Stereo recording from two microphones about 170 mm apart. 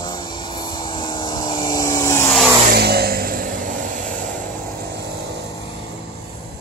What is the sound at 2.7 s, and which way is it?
Vehicle, 70° right (ahead or behind).